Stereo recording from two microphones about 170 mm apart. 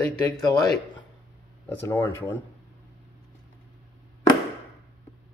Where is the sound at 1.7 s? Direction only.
15° left (ahead or behind).